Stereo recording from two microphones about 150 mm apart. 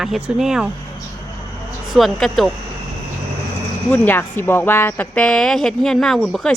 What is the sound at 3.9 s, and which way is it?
Speech, 15° left (ahead or behind).